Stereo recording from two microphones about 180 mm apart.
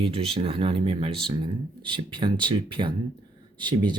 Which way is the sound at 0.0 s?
30° right (ahead or behind).